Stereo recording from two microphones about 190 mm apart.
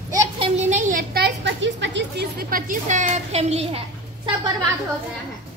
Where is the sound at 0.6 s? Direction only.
40° right (ahead or behind).